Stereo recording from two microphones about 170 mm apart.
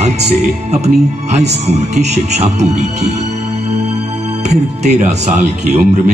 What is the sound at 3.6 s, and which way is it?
Music, 45° right (ahead or behind).